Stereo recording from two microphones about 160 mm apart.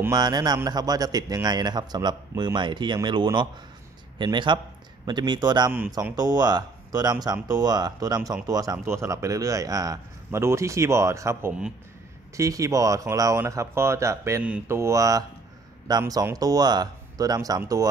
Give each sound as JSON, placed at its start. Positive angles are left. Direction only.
{"t": 0.1, "sound": "a man's voice", "side_deg": -25}